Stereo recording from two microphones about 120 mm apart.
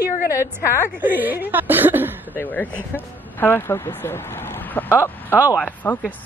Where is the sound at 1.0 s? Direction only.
15° right (ahead or behind).